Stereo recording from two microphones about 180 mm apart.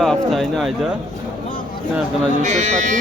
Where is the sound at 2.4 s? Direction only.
40° right (ahead or behind).